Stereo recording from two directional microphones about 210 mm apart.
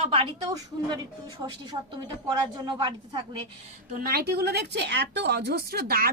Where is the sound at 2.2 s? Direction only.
20° right (ahead or behind).